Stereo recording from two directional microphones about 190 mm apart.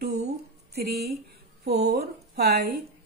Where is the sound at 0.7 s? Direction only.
60° right (ahead or behind).